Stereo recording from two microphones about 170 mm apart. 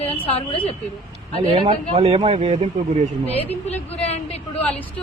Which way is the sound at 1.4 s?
30° right (ahead or behind).